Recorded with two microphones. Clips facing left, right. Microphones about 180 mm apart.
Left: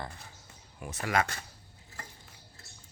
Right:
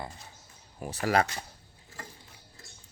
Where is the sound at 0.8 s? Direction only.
35° right (ahead or behind).